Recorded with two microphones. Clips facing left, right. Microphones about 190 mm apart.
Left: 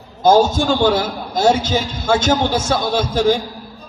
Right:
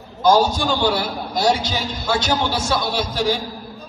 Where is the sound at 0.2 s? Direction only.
45° left (ahead or behind).